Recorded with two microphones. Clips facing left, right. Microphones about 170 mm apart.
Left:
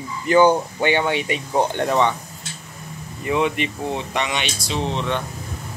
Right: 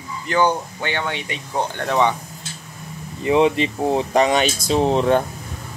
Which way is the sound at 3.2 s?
30° right (ahead or behind).